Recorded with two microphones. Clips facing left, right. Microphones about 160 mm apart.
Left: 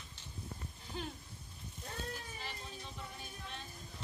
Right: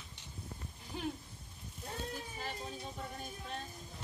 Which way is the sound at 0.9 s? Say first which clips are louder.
Right 4 dB; 15° right (ahead or behind).